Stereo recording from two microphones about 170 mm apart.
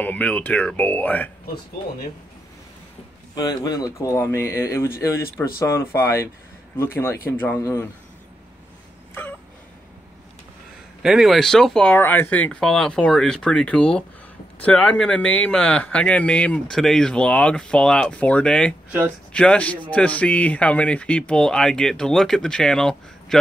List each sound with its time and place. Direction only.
0.0 s speech: 10° left (ahead or behind)
3.3 s speech: 25° left (ahead or behind)
11.0 s a man's voice: 5° right (ahead or behind)